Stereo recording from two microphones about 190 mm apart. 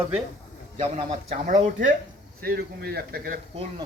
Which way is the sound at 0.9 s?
35° right (ahead or behind).